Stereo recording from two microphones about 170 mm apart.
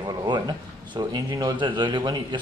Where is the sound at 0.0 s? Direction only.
25° right (ahead or behind).